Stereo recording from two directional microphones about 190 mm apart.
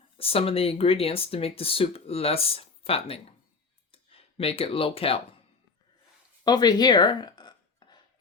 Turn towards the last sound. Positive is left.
turn(degrees=25)  # may be behind; listen again after turning